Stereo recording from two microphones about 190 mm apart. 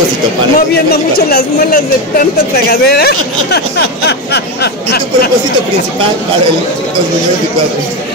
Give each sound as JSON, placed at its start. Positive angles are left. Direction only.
{"t": 0.6, "sound": "speech", "side_deg": 50}